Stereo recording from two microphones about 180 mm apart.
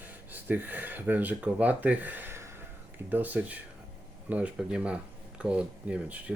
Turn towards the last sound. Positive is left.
turn(degrees=-5)  # may be behind; listen again after turning